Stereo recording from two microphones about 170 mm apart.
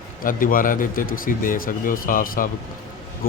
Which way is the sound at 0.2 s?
55° left (ahead or behind).